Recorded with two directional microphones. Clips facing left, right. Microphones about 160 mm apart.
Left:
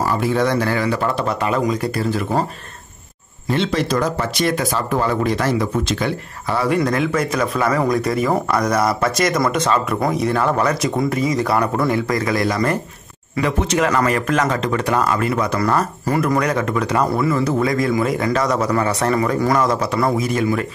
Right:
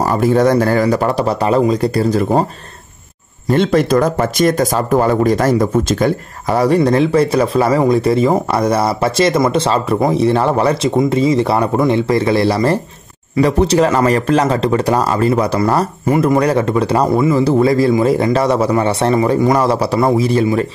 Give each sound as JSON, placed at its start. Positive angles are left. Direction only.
{"t": 0.0, "sound": "a man's voice", "side_deg": -45}
{"t": 3.4, "sound": "a man's voice", "side_deg": -50}